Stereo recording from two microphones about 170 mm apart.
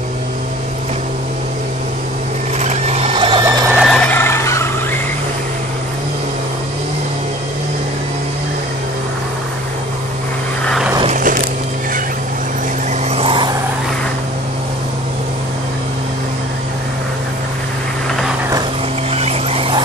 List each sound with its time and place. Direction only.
2.6 s a sound: 40° right (ahead or behind)
3.4 s helicopter: 10° right (ahead or behind)
3.8 s vehicle: 5° left (ahead or behind)
11.1 s walk: 50° right (ahead or behind)
13.1 s vehicle: 30° right (ahead or behind)
19.1 s a sound: 35° right (ahead or behind)